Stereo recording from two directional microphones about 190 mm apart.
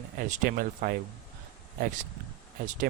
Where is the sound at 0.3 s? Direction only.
50° right (ahead or behind).